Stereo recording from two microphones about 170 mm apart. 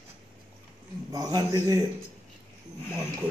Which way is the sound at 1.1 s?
20° right (ahead or behind).